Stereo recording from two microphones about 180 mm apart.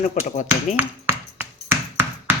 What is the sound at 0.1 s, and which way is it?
Speech, 40° left (ahead or behind).